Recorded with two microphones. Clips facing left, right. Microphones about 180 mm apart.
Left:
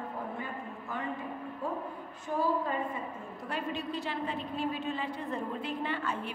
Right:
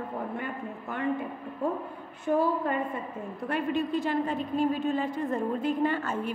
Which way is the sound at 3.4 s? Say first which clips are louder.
Right 7 dB; 55° right (ahead or behind).